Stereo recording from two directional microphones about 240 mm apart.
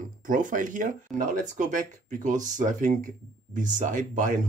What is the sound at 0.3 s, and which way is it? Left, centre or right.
Speech, right.